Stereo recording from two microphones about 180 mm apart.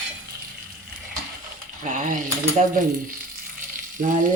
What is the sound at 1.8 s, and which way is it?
Speech, 45° right (ahead or behind).